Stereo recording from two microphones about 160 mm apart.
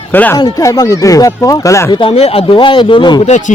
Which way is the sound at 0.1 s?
10° left (ahead or behind).